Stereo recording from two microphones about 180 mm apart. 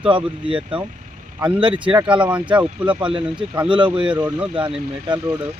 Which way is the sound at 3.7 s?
25° right (ahead or behind).